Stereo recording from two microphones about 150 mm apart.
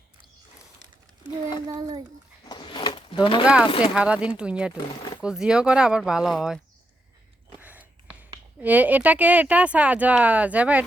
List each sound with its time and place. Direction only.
1.6 s a child's voice: 25° right (ahead or behind)
2.5 s a sound: 30° left (ahead or behind)
3.4 s speech: 5° right (ahead or behind)
3.7 s speech: 35° left (ahead or behind)
3.9 s speech: 5° right (ahead or behind)
7.5 s a sound: 10° right (ahead or behind)
8.6 s speech: 10° right (ahead or behind)